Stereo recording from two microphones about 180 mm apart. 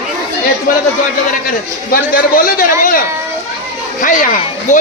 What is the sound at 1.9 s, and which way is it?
Speech, 50° left (ahead or behind).